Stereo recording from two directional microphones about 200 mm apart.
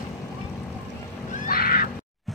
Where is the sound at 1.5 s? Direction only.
45° left (ahead or behind).